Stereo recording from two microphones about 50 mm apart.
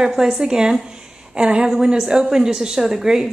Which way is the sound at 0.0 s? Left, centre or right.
Centre.